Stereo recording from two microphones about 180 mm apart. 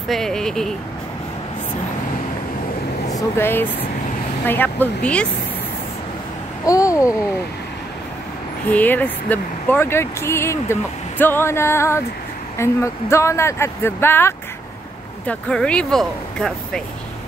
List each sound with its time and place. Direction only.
0.1 s speech: 5° left (ahead or behind)
3.1 s speech: 15° left (ahead or behind)
6.6 s a child's voice: 20° left (ahead or behind)
8.6 s speech: 10° left (ahead or behind)